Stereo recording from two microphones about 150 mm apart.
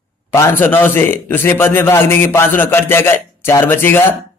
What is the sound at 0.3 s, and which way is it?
A man's voice, 15° left (ahead or behind).